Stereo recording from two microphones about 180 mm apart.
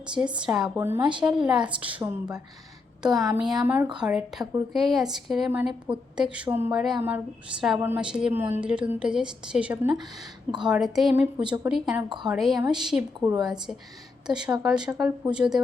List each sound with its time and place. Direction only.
0.3 s a woman's voice: 5° right (ahead or behind)
13.2 s a woman's voice: 20° right (ahead or behind)
14.3 s a woman's voice: 5° right (ahead or behind)